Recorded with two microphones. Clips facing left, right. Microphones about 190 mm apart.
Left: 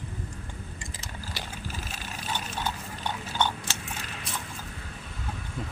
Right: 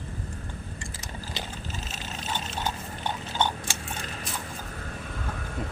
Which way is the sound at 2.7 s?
20° right (ahead or behind).